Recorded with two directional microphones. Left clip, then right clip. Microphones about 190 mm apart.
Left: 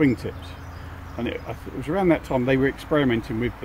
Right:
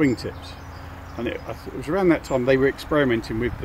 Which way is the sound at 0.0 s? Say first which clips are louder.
Even; 50° left (ahead or behind).